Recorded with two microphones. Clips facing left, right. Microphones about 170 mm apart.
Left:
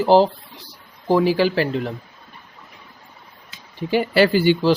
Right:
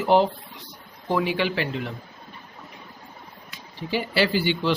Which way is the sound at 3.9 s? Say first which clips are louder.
Left 7 dB; 50° left (ahead or behind).